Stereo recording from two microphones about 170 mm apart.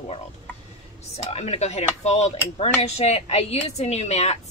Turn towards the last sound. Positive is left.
turn(degrees=40)  # may be behind; listen again after turning